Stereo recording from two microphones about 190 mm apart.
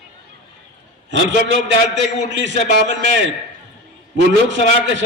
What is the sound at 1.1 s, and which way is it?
A man's voice, 70° right (ahead or behind).